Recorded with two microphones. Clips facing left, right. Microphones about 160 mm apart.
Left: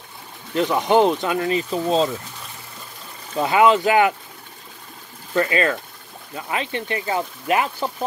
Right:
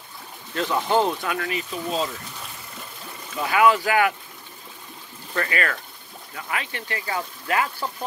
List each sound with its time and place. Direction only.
0.6 s speech: 15° left (ahead or behind)
3.3 s speech: 25° left (ahead or behind)
5.3 s speech: 25° left (ahead or behind)